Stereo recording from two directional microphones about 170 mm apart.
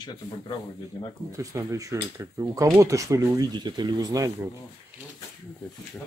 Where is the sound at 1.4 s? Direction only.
20° right (ahead or behind).